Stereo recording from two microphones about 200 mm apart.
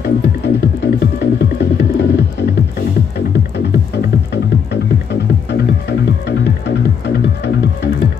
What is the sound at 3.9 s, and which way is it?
Music, 55° left (ahead or behind).